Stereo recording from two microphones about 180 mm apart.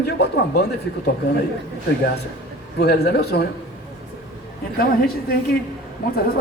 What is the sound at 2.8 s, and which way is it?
Speech, 65° left (ahead or behind).